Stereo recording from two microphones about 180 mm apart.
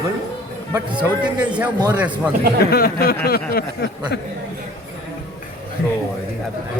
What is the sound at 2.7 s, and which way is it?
Speech, 55° left (ahead or behind).